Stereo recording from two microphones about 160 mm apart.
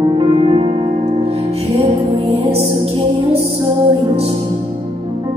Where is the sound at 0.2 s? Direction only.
35° right (ahead or behind).